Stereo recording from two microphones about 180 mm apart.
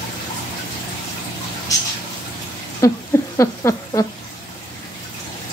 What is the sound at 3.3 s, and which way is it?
Speech, 15° left (ahead or behind).